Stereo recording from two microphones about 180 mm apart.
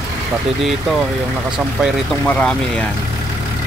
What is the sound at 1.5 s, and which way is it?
Speech, 5° right (ahead or behind).